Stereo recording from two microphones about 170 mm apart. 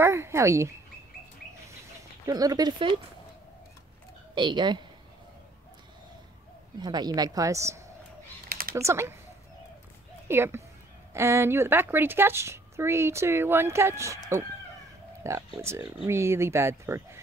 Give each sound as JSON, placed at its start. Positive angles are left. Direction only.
{"t": 0.0, "sound": "a woman's voice", "side_deg": -15}
{"t": 2.2, "sound": "a woman's voice", "side_deg": -20}
{"t": 4.4, "sound": "a woman's voice", "side_deg": -25}
{"t": 6.8, "sound": "a woman's voice", "side_deg": -25}
{"t": 8.5, "sound": "a sound", "side_deg": -60}
{"t": 8.7, "sound": "a woman's voice", "side_deg": -15}
{"t": 10.2, "sound": "a woman's voice", "side_deg": -15}
{"t": 15.2, "sound": "a woman's voice", "side_deg": -15}